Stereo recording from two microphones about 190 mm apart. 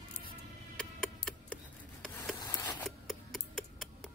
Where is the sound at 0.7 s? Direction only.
5° left (ahead or behind).